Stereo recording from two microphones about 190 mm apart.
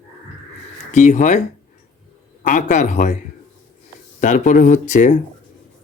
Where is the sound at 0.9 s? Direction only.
35° left (ahead or behind).